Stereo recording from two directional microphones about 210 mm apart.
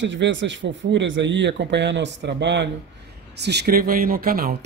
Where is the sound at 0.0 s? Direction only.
60° right (ahead or behind).